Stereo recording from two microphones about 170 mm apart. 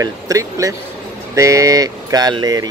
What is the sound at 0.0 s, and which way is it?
Speech, 20° right (ahead or behind).